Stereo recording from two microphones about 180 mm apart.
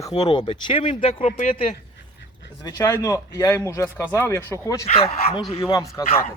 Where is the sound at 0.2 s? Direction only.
25° left (ahead or behind).